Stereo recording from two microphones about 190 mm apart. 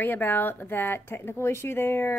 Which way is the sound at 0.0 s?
10° left (ahead or behind).